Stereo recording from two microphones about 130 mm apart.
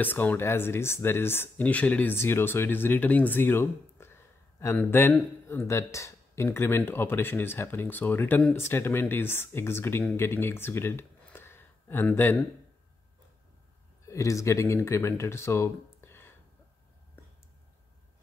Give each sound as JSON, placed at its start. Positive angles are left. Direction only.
{"t": 0.0, "sound": "speech", "side_deg": 15}
{"t": 14.0, "sound": "speech", "side_deg": 25}